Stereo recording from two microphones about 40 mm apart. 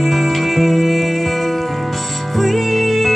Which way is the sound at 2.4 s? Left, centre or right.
Centre.